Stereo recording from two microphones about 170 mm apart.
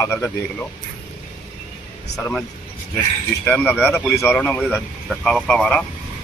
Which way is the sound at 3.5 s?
10° left (ahead or behind).